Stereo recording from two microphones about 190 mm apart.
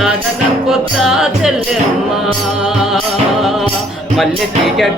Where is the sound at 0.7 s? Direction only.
Centre (ahead or behind).